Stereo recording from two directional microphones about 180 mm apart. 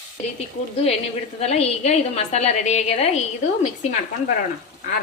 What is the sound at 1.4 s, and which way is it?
A woman's voice, 35° left (ahead or behind).